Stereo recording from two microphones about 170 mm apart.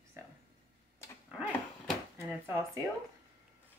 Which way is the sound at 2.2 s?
15° right (ahead or behind).